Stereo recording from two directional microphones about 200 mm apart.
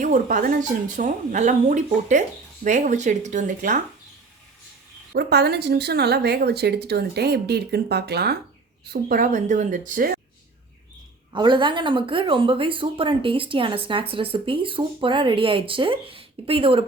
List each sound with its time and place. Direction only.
0.0 s speech: 40° right (ahead or behind)
5.1 s a woman's voice: 55° right (ahead or behind)
11.3 s a woman's voice: 20° right (ahead or behind)